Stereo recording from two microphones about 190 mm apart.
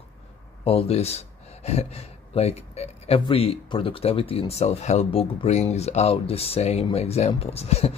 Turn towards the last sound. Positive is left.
turn(degrees=35)  # may be behind; listen again after turning